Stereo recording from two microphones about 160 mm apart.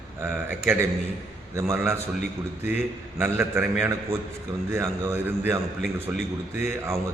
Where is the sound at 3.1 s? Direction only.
15° right (ahead or behind).